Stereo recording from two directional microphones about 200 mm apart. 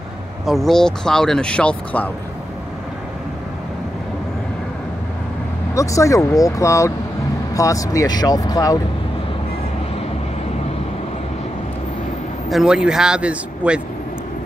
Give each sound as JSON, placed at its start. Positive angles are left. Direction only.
{"t": 0.5, "sound": "speech", "side_deg": 0}
{"t": 5.8, "sound": "speech", "side_deg": 15}
{"t": 12.4, "sound": "speech", "side_deg": 0}